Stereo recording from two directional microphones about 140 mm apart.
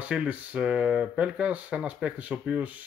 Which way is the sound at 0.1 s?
10° right (ahead or behind).